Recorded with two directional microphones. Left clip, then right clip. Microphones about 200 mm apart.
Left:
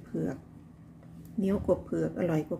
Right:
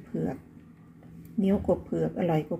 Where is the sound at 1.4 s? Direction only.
5° right (ahead or behind).